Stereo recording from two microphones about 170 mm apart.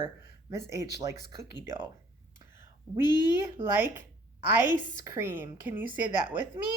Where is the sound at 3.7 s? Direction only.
10° right (ahead or behind).